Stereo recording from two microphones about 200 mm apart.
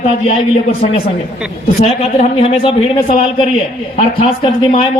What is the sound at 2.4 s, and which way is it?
Speech, 30° left (ahead or behind).